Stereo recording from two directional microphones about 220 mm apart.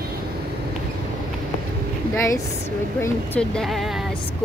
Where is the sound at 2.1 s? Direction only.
15° left (ahead or behind).